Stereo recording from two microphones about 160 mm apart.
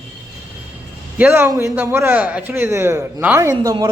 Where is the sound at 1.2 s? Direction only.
15° right (ahead or behind).